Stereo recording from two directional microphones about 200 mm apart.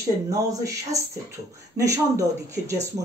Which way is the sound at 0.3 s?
15° right (ahead or behind).